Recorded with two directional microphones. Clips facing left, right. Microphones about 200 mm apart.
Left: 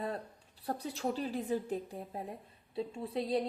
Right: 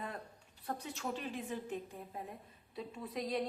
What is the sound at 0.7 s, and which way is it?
A woman's voice, 35° left (ahead or behind).